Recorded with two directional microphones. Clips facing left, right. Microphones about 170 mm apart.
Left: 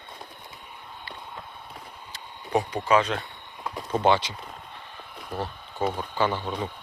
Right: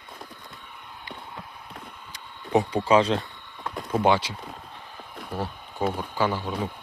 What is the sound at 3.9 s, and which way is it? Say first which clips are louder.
Speech: even; 10° right (ahead or behind).